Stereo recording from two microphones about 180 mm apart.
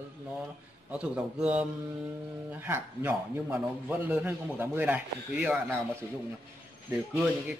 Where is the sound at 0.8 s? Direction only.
5° right (ahead or behind).